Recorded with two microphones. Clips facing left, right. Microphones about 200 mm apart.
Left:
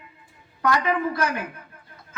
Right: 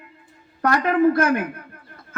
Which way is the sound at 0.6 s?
55° right (ahead or behind).